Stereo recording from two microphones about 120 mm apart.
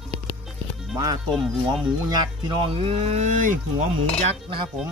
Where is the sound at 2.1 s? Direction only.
35° right (ahead or behind).